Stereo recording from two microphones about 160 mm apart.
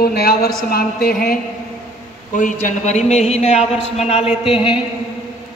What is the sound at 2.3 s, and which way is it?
Speech, 55° left (ahead or behind).